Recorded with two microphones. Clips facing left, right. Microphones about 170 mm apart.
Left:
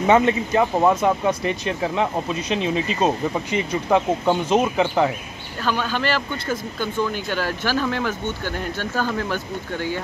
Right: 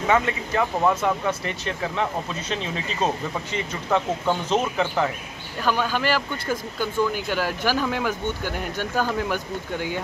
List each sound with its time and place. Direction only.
0.0 s speech: 25° left (ahead or behind)
5.6 s speech: 10° right (ahead or behind)